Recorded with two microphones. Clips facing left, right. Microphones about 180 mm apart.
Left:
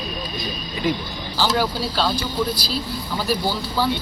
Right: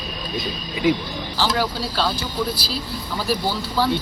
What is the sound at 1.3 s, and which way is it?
Speech, centre (ahead or behind).